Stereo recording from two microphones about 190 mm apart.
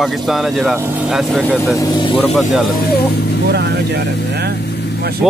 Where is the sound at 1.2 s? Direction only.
5° left (ahead or behind); by 2.2 s 25° left (ahead or behind).